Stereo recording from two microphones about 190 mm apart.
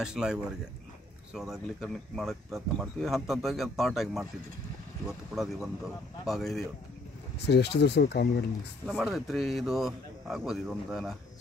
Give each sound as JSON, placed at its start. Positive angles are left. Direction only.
{"t": 0.0, "sound": "speech", "side_deg": -5}
{"t": 7.3, "sound": "speech", "side_deg": 60}
{"t": 8.8, "sound": "speech", "side_deg": 0}